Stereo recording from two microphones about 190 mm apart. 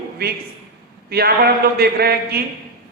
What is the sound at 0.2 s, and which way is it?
A man's voice, 55° right (ahead or behind).